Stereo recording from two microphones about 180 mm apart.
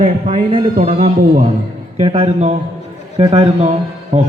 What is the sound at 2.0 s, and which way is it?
A man's voice, 30° right (ahead or behind).